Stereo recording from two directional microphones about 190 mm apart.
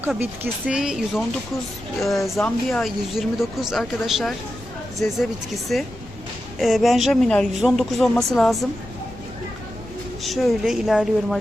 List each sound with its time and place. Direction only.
0.0 s speech: 10° right (ahead or behind)
10.2 s speech: centre (ahead or behind)